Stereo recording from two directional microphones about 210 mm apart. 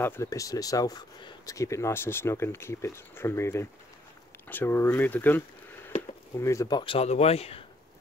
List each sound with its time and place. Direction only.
0.0 s speech: 10° left (ahead or behind)
6.4 s speech: 15° left (ahead or behind)